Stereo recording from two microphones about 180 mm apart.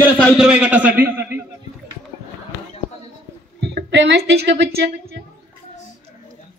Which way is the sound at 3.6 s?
70° right (ahead or behind).